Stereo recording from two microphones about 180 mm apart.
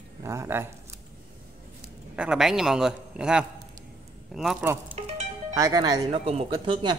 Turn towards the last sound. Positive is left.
turn(degrees=-25)  # may be behind; listen again after turning